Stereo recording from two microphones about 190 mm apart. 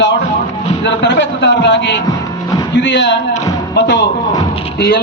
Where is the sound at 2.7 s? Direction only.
65° left (ahead or behind).